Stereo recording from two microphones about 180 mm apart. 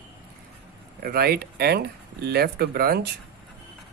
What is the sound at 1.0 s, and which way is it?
Speech, 60° right (ahead or behind).